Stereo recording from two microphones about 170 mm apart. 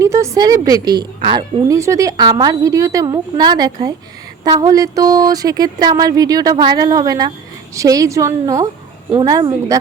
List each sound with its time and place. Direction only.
0.0 s a woman's voice: 15° right (ahead or behind)